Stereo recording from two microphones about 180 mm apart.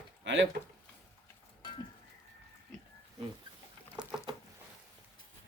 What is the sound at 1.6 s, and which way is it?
Livestock, 25° left (ahead or behind).